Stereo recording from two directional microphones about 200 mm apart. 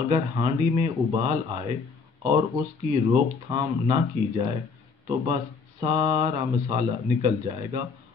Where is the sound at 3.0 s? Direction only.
25° right (ahead or behind).